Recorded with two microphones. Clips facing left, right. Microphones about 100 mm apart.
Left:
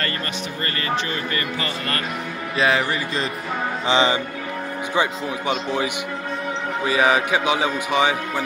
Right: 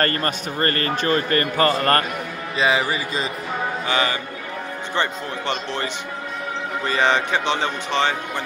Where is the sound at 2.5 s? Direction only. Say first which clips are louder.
Even; centre (ahead or behind).